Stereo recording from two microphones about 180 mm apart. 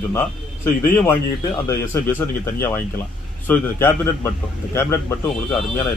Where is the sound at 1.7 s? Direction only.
15° left (ahead or behind).